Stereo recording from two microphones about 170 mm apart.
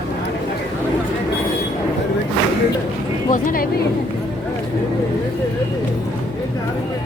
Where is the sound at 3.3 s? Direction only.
55° left (ahead or behind).